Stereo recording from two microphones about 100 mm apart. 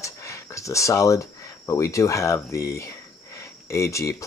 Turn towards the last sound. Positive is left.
turn(degrees=30)  # may be behind; listen again after turning